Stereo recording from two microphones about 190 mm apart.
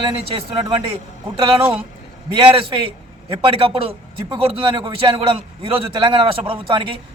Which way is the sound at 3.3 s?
30° right (ahead or behind).